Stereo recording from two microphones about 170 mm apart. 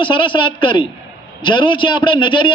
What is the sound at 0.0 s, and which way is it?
A man's voice, 30° left (ahead or behind).